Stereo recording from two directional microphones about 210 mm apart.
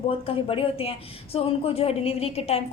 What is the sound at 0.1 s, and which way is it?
A woman's voice, 25° left (ahead or behind).